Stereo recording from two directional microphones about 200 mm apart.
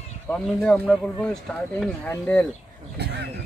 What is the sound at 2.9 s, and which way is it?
Speech, 55° right (ahead or behind).